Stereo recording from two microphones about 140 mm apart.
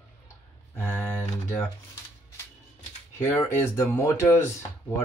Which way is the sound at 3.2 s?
15° left (ahead or behind).